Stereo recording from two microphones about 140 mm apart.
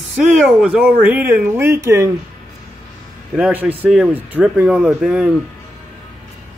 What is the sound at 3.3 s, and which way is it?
Speech, 10° right (ahead or behind).